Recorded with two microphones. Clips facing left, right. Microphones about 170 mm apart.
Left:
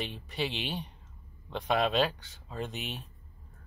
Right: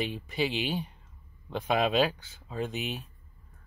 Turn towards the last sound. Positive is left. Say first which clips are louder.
# right 4 dB
turn(degrees=0)  # may be behind; listen again after turning